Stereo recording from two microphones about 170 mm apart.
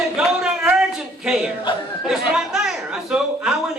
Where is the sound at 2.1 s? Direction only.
5° right (ahead or behind).